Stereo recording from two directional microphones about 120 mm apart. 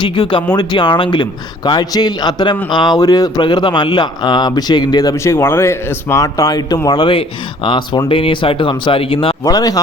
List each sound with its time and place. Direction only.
0.0 s speech: 40° left (ahead or behind)
9.4 s speech: 30° left (ahead or behind)